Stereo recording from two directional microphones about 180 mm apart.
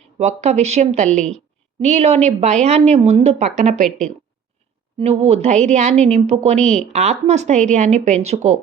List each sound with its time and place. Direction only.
0.2 s a woman's voice: 40° right (ahead or behind)
3.8 s speech: centre (ahead or behind)
4.9 s a woman's voice: 35° right (ahead or behind)
6.6 s speech: 5° left (ahead or behind)
6.9 s a woman's voice: 40° right (ahead or behind)